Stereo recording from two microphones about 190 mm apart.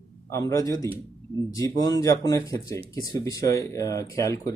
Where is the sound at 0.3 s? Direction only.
15° left (ahead or behind).